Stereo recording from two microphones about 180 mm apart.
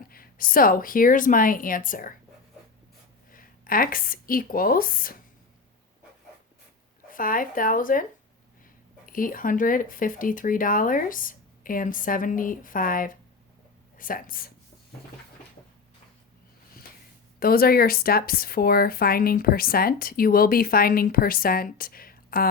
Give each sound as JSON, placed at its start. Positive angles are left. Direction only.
{"t": 0.1, "sound": "speech", "side_deg": 55}
{"t": 3.3, "sound": "speech", "side_deg": 50}
{"t": 7.1, "sound": "speech", "side_deg": 50}
{"t": 9.0, "sound": "a woman's voice", "side_deg": 50}
{"t": 17.4, "sound": "speech", "side_deg": 55}